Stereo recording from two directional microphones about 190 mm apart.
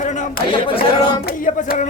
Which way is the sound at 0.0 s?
40° left (ahead or behind).